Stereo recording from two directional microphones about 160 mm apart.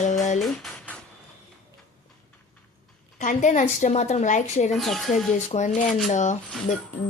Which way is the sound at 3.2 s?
50° left (ahead or behind).